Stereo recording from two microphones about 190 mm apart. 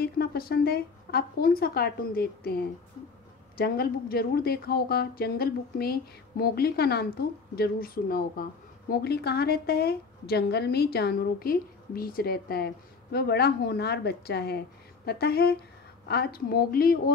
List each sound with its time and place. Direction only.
0.0 s a woman's voice: 55° left (ahead or behind)